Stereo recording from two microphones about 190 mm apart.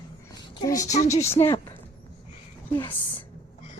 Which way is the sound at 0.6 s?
20° left (ahead or behind).